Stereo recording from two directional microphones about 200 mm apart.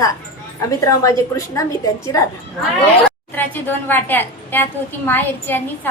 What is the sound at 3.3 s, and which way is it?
A woman's voice, 10° left (ahead or behind).